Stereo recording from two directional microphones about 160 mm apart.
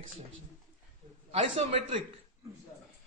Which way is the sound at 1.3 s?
35° right (ahead or behind).